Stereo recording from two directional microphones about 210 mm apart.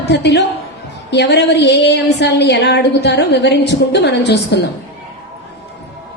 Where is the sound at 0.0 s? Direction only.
55° left (ahead or behind).